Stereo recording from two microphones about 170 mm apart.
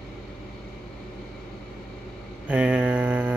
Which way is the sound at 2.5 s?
10° right (ahead or behind).